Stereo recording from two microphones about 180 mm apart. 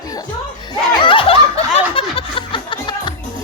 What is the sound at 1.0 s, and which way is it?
Snicker, 30° left (ahead or behind).